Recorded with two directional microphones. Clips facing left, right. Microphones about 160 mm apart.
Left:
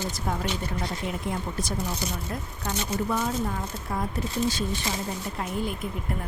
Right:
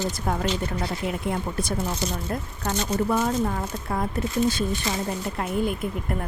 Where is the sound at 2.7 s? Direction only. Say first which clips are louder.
Right 4 dB; 55° right (ahead or behind).